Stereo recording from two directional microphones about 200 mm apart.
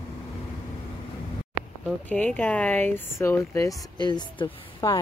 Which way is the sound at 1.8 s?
5° left (ahead or behind).